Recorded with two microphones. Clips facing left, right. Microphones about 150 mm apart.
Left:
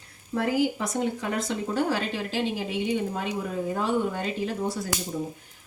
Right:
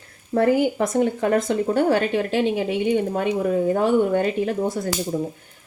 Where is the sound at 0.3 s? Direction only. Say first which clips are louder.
Right 7 dB; 55° right (ahead or behind).